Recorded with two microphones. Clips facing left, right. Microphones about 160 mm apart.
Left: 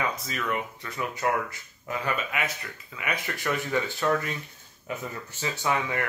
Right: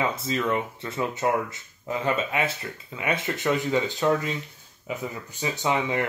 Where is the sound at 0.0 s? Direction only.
25° right (ahead or behind).